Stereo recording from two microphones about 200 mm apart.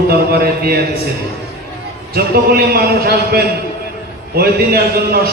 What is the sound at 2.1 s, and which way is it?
A man's voice, 50° right (ahead or behind).